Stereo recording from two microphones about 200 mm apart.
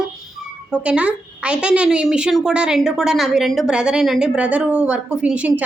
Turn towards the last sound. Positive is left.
turn(degrees=-5)  # may be behind; listen again after turning